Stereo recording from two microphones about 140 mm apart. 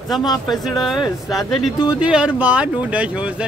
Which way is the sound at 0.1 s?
30° left (ahead or behind).